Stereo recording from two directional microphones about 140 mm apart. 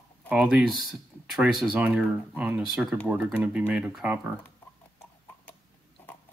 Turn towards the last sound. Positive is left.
turn(degrees=10)  # may be behind; listen again after turning